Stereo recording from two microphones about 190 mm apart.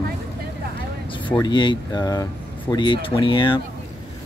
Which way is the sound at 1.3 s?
25° left (ahead or behind).